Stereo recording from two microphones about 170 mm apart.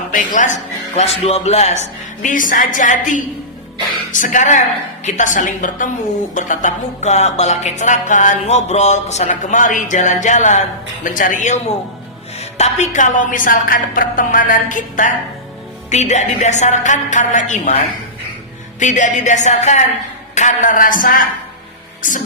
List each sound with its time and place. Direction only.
0.1 s a man's voice: 50° left (ahead or behind)
2.2 s music: 50° left (ahead or behind)